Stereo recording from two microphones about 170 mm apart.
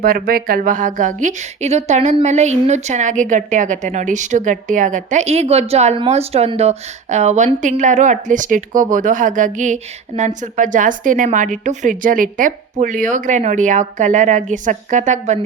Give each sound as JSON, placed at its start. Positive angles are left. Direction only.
{"t": 0.0, "sound": "a woman's voice", "side_deg": -60}